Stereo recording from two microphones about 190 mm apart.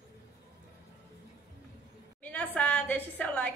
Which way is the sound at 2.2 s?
10° left (ahead or behind).